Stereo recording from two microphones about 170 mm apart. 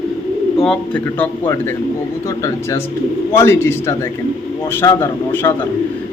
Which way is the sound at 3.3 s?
15° left (ahead or behind).